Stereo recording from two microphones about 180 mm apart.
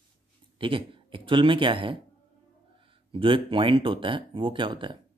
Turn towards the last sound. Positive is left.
turn(degrees=-25)  # may be behind; listen again after turning